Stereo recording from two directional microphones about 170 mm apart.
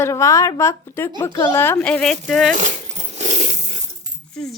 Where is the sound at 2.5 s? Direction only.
45° right (ahead or behind).